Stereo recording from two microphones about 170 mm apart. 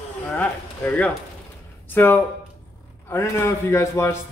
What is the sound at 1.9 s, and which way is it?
Speech, 10° left (ahead or behind).